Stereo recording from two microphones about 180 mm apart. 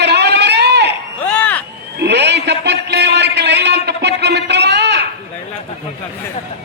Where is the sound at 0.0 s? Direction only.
70° right (ahead or behind).